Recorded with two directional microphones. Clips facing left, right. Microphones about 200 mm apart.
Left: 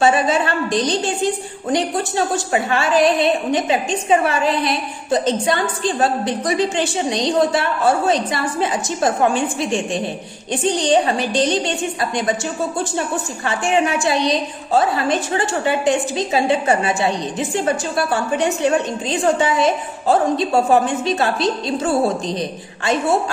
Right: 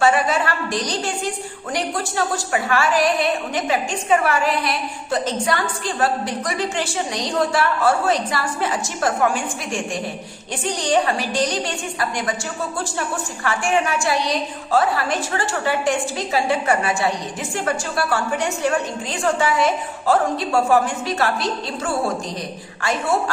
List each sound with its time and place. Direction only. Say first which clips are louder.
0.0 s a woman's voice: left 2 dB; 20° left (ahead or behind)
13.4 s a woman's voice: left 2 dB; 20° left (ahead or behind)